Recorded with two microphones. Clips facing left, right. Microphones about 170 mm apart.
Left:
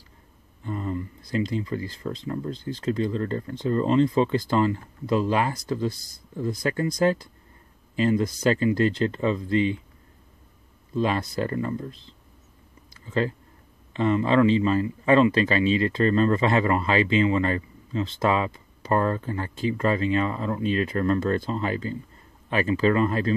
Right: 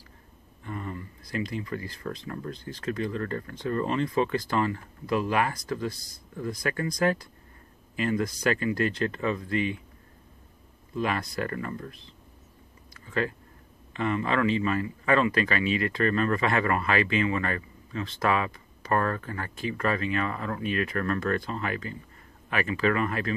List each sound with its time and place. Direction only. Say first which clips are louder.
0.7 s speech: left 6 dB; 25° left (ahead or behind)
11.0 s speech: left 4 dB; 25° left (ahead or behind)